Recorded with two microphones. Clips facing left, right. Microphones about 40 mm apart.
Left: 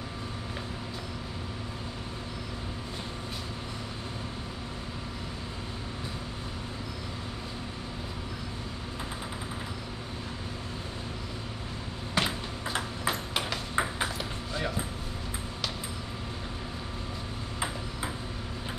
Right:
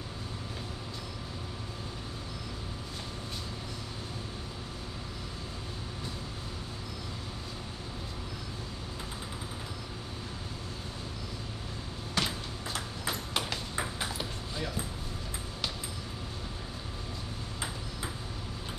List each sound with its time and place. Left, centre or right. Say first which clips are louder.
12.2 s ping: left 3 dB; left